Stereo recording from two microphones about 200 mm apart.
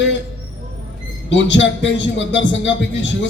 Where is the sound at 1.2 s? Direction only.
65° left (ahead or behind).